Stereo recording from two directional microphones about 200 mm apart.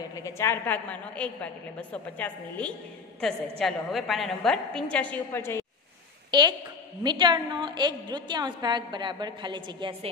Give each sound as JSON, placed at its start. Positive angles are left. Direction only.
{"t": 0.2, "sound": "a woman's voice", "side_deg": 15}
{"t": 7.0, "sound": "a woman's voice", "side_deg": -20}